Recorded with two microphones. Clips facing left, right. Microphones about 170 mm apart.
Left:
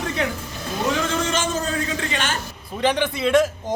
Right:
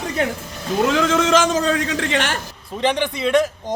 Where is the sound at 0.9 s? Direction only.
90° right; by 2.3 s 70° right (ahead or behind).